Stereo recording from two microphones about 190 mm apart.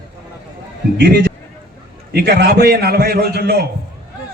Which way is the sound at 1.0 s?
60° right (ahead or behind).